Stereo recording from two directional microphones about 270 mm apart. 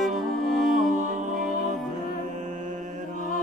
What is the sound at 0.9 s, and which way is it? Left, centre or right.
Music, right.